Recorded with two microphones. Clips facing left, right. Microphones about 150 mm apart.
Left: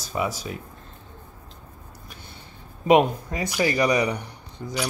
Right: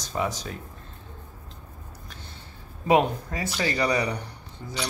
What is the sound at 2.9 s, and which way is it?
Speech, 20° left (ahead or behind).